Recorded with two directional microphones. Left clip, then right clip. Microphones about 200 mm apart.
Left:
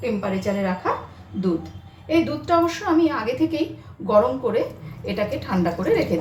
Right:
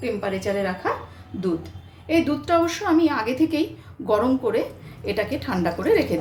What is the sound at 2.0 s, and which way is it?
A woman's voice, 35° right (ahead or behind).